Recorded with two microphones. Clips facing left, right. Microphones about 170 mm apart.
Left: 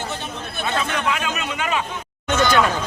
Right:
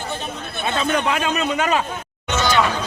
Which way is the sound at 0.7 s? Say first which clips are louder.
Right 4 dB; 35° right (ahead or behind).